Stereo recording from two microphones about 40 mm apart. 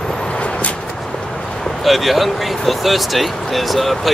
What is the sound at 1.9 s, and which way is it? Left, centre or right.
Speech, centre.